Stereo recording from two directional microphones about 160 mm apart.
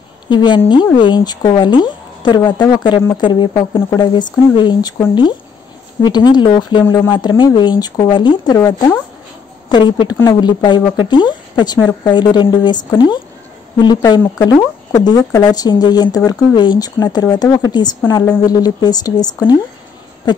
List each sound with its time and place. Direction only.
0.3 s speech: 30° left (ahead or behind)
14.2 s speech: 15° left (ahead or behind)
14.9 s speech: 25° left (ahead or behind)